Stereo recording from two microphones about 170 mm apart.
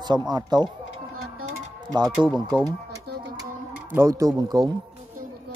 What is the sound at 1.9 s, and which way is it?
Speech, 25° right (ahead or behind).